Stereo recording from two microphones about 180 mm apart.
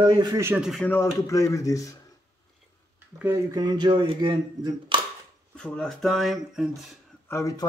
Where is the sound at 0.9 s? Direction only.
15° left (ahead or behind).